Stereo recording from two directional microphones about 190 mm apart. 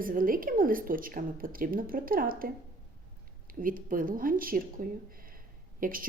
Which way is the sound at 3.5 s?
45° right (ahead or behind).